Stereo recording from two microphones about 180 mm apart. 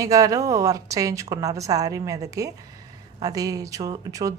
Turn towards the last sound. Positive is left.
turn(degrees=-20)  # may be behind; listen again after turning